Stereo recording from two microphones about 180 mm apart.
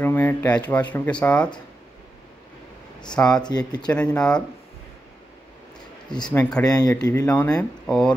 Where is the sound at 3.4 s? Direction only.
25° left (ahead or behind).